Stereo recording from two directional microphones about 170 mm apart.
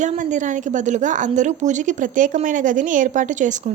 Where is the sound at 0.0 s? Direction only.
45° right (ahead or behind).